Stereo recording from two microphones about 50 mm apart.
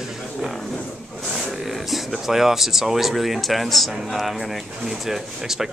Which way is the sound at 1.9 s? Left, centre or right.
Centre.